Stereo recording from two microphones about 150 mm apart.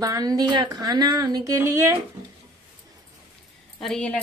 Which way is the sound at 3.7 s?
5° left (ahead or behind).